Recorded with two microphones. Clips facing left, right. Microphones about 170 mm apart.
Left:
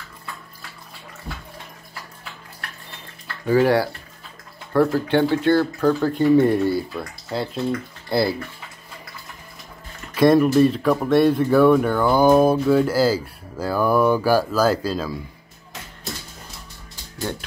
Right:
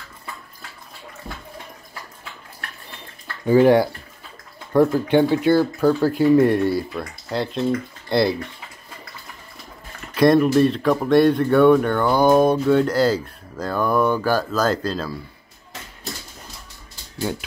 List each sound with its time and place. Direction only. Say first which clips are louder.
3.4 s speech: right 3 dB; 20° right (ahead or behind); by 8.4 s centre (ahead or behind)
10.1 s speech: even; centre (ahead or behind)